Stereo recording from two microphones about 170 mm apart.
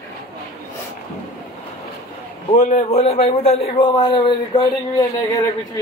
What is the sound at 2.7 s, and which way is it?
Speech, 40° left (ahead or behind).